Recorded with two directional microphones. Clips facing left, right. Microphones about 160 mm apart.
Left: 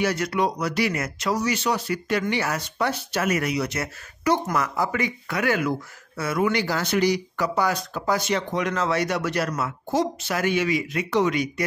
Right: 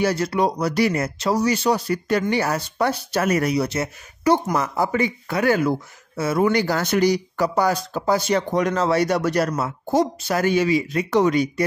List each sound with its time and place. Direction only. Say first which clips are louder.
0.0 s speech: right 3 dB; 30° right (ahead or behind)
11.1 s speech: right 3 dB; 45° right (ahead or behind)
11.3 s speech: right 5 dB; 35° right (ahead or behind)